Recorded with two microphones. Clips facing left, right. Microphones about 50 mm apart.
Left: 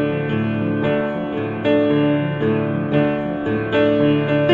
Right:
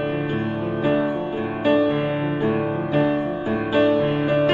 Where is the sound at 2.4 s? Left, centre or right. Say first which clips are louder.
Left 2 dB; left.